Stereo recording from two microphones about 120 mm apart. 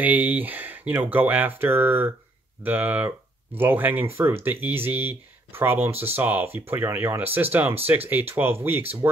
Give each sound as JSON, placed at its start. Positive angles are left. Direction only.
{"t": 0.0, "sound": "speech", "side_deg": -15}